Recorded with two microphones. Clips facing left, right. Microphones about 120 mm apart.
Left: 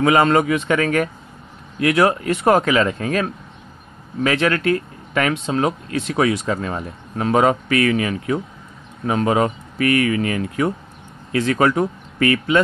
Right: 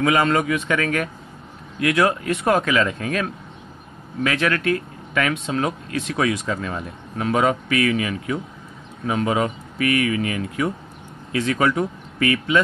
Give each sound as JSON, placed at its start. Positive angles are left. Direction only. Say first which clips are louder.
{"t": 0.0, "sound": "speech", "louder": "left 4 dB", "side_deg": 30}